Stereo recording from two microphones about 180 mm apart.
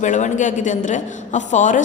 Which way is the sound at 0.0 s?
45° left (ahead or behind).